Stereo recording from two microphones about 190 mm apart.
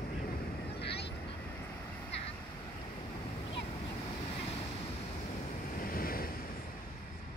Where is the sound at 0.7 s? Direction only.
60° left (ahead or behind).